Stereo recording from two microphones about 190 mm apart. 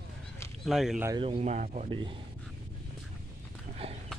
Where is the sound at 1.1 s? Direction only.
30° right (ahead or behind).